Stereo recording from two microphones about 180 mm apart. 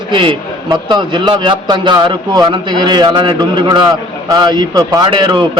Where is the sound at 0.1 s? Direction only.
30° right (ahead or behind).